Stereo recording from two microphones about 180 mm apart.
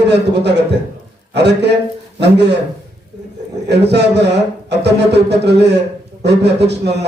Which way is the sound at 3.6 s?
70° right (ahead or behind).